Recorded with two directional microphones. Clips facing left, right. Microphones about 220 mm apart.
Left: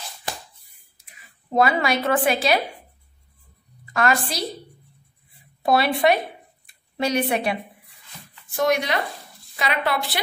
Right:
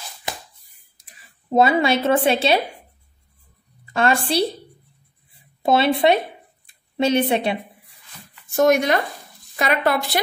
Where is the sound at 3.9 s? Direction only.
30° right (ahead or behind).